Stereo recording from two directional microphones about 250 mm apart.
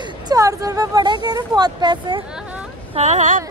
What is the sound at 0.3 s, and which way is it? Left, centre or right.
Speech, centre.